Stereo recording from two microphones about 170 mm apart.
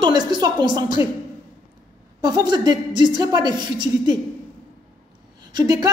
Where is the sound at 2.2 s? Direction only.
25° right (ahead or behind).